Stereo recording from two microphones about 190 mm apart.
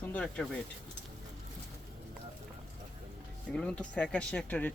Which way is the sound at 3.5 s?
5° left (ahead or behind).